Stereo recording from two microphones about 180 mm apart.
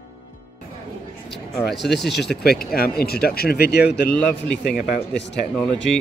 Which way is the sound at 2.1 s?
65° left (ahead or behind).